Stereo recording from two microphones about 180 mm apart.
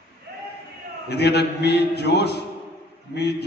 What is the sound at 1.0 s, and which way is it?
A man's voice, 65° left (ahead or behind).